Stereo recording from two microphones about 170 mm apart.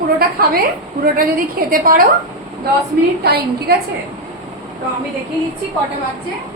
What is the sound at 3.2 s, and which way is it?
Speech, 65° right (ahead or behind).